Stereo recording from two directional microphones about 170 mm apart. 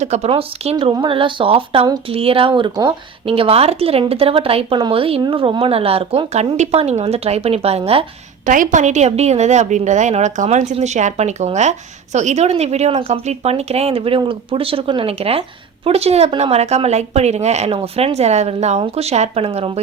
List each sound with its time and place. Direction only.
0.0 s speech: 40° right (ahead or behind)
8.4 s a woman's voice: 50° right (ahead or behind)